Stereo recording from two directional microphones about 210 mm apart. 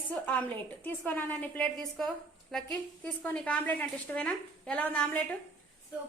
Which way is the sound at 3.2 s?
5° left (ahead or behind).